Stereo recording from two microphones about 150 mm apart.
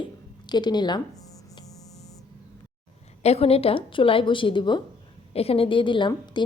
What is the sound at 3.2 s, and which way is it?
A woman's voice, 45° left (ahead or behind).